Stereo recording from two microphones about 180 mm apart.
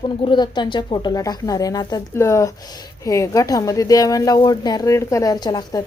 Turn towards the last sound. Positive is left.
turn(degrees=25)  # may be behind; listen again after turning